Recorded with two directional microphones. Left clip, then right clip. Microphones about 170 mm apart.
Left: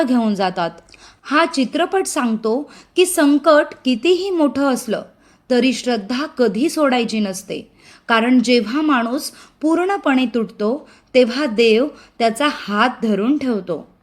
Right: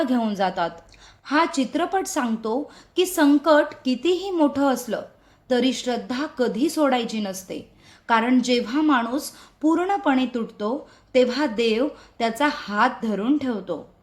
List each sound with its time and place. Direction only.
0.0 s a woman's voice: 30° left (ahead or behind)